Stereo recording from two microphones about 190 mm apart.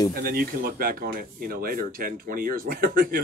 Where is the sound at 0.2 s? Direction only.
50° right (ahead or behind).